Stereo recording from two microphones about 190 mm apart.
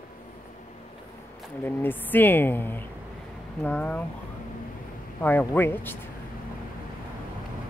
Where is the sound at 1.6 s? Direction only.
10° left (ahead or behind).